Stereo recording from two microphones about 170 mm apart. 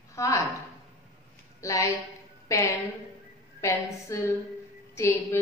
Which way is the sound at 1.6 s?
20° left (ahead or behind).